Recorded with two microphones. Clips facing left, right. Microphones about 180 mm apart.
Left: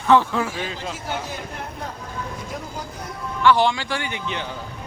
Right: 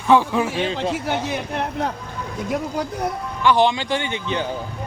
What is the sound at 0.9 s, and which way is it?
A man's voice, 70° right (ahead or behind).